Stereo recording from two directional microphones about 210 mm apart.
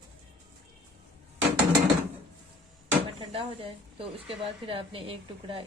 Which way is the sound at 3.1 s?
25° right (ahead or behind).